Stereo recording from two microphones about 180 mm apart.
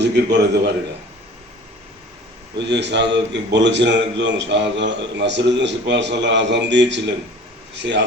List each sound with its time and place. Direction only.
0.0 s a man's voice: 70° right (ahead or behind)
2.6 s a man's voice: 75° right (ahead or behind)